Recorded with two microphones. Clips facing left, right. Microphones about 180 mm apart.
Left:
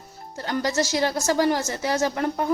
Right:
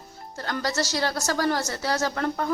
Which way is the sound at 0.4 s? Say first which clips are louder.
Left 3 dB; 15° left (ahead or behind).